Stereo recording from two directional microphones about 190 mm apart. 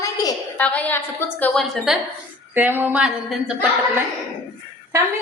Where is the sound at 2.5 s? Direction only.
10° right (ahead or behind).